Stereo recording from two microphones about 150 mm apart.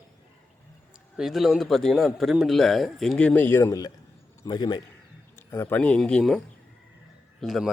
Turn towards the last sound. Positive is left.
turn(degrees=0)  # may be behind; listen again after turning